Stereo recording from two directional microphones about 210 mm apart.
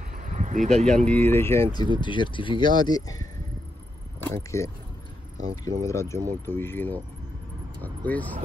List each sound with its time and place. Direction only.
0.1 s a sound: 35° right (ahead or behind)
0.7 s speech: 5° left (ahead or behind)
5.8 s speech: 15° left (ahead or behind)